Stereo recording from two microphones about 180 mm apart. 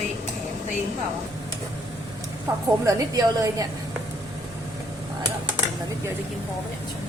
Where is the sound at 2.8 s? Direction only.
20° right (ahead or behind).